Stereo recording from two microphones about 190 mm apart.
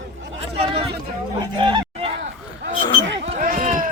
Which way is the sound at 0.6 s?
30° right (ahead or behind).